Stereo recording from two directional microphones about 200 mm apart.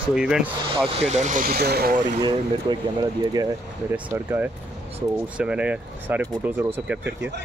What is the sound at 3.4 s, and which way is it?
Speech, 20° right (ahead or behind).